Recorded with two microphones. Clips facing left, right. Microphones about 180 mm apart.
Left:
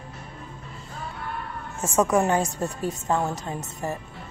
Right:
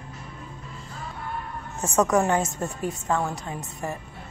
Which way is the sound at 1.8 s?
10° left (ahead or behind).